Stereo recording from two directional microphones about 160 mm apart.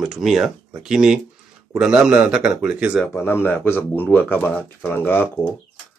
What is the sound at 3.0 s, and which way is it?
Speech, 15° left (ahead or behind).